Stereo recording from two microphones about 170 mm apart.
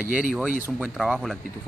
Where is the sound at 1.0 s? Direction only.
Centre (ahead or behind).